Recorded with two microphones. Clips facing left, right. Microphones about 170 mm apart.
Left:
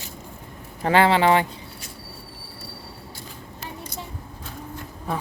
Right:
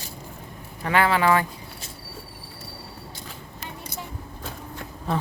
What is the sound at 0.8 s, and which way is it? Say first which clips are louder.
Speech: left 3 dB; 30° left (ahead or behind).